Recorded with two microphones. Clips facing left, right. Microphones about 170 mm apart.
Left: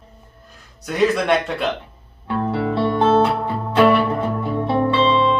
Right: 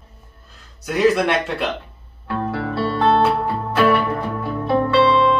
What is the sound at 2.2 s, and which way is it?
Music, 20° left (ahead or behind).